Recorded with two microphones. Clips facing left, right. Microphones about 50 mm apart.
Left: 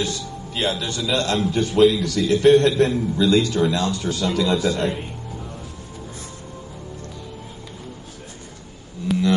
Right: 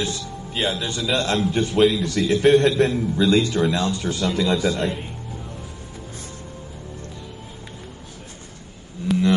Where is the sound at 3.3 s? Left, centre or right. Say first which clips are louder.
Left 1 dB; right.